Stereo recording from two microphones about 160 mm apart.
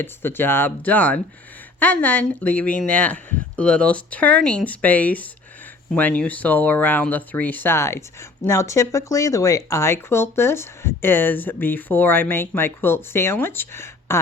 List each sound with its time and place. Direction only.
0.0 s speech: 15° left (ahead or behind)